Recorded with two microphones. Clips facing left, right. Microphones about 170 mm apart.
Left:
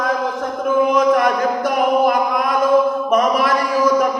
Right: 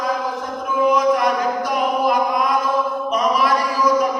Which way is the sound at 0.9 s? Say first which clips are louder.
Left 2 dB; 55° left (ahead or behind).